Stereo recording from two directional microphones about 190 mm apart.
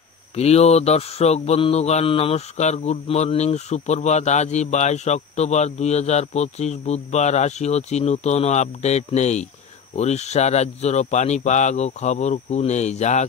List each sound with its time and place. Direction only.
0.4 s mantra: 35° left (ahead or behind)